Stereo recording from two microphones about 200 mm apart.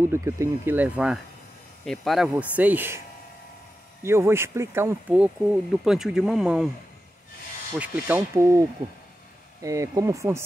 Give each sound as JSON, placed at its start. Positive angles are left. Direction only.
{"t": 0.1, "sound": "speech", "side_deg": -15}
{"t": 4.0, "sound": "speech", "side_deg": -15}
{"t": 7.8, "sound": "speech", "side_deg": -10}